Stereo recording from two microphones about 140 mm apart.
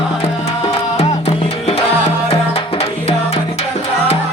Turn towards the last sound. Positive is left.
turn(degrees=45)  # may be behind; listen again after turning